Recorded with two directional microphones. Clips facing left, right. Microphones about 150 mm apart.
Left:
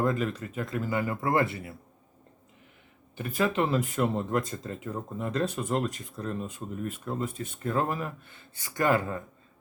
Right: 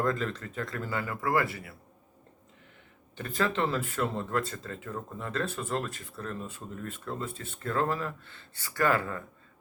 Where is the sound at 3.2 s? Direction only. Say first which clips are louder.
Left 2 dB; 10° left (ahead or behind).